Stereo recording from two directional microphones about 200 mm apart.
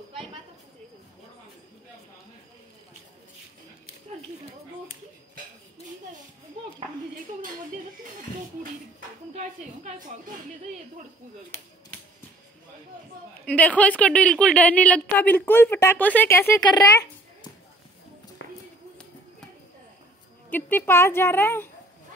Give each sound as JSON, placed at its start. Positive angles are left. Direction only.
{"t": 9.4, "sound": "a woman's voice", "side_deg": -40}
{"t": 13.5, "sound": "a woman's voice", "side_deg": 5}
{"t": 18.4, "sound": "run", "side_deg": 70}
{"t": 20.5, "sound": "a woman's voice", "side_deg": 10}